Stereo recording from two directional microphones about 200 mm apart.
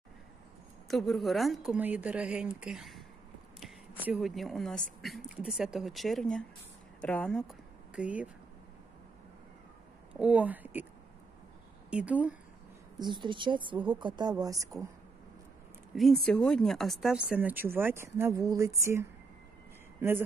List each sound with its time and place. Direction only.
0.8 s speech: centre (ahead or behind)
3.5 s a sound: 5° right (ahead or behind)
5.0 s speech: centre (ahead or behind)
7.9 s speech: 5° right (ahead or behind)
10.1 s speech: 5° right (ahead or behind)
11.9 s speech: 5° right (ahead or behind)
13.0 s speech: 25° right (ahead or behind)
15.9 s speech: centre (ahead or behind)